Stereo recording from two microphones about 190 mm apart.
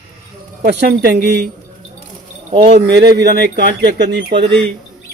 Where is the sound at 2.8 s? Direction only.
60° right (ahead or behind).